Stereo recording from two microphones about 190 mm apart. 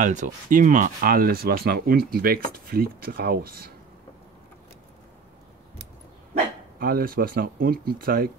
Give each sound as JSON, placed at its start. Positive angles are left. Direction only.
{"t": 0.0, "sound": "speech", "side_deg": -40}
{"t": 6.8, "sound": "speech", "side_deg": -50}